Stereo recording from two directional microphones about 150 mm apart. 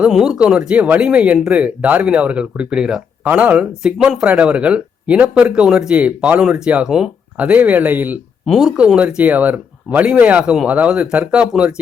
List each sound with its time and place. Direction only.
0.0 s speech: 5° right (ahead or behind)